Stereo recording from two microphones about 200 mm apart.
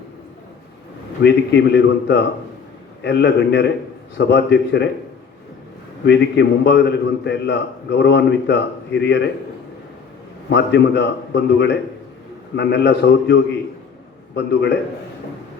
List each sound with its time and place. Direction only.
1.2 s a man's voice: 60° left (ahead or behind)
6.1 s a man's voice: 60° left (ahead or behind)
10.5 s a man's voice: 60° left (ahead or behind)